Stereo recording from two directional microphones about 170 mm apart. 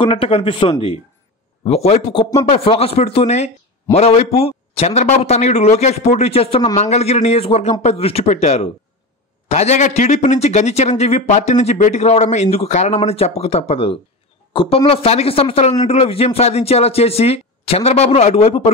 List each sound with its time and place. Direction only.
0.0 s a man's voice: 35° left (ahead or behind)